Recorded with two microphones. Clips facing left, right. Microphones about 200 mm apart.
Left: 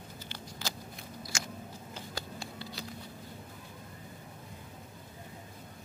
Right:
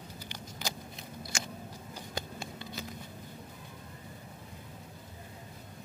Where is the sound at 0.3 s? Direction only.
15° right (ahead or behind).